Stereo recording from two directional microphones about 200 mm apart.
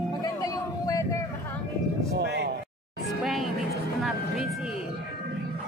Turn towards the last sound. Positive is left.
turn(degrees=0)  # may be behind; listen again after turning